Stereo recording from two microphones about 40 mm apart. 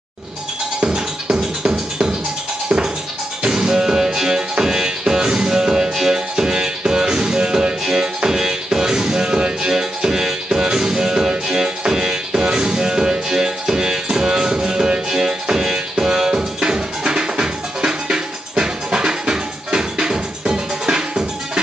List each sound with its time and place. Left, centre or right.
0.7 s music: right
3.4 s music: centre